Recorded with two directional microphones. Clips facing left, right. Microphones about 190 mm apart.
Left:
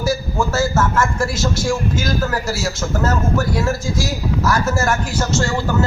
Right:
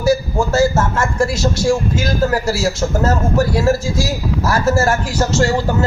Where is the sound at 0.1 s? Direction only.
30° right (ahead or behind).